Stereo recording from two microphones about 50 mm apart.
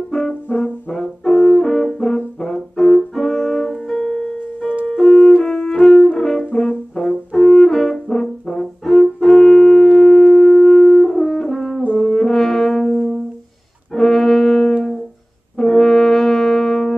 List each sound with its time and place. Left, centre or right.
0.6 s brass instrument: centre
2.4 s music: centre
6.1 s brass instrument: centre
6.5 s brass instrument: centre
7.0 s brass instrument: centre
12.0 s french horn: centre
13.9 s brass instrument: centre